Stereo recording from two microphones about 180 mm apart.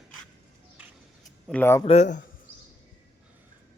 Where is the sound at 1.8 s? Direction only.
40° left (ahead or behind).